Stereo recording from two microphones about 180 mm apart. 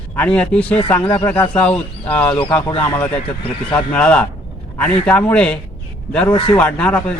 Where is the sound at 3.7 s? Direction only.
5° left (ahead or behind).